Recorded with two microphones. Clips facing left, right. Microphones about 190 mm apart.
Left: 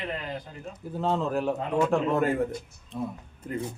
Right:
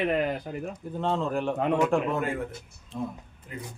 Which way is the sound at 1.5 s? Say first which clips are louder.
Right 2 dB; 65° right (ahead or behind).